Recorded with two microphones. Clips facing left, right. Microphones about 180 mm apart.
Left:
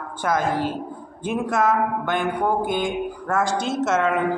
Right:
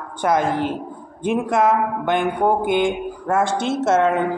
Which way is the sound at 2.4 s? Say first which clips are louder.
Right 6 dB; 25° right (ahead or behind).